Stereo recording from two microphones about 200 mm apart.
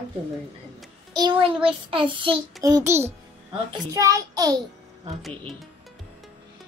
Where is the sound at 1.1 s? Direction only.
25° right (ahead or behind).